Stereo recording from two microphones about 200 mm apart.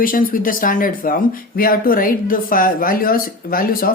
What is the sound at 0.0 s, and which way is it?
Speech, 45° left (ahead or behind).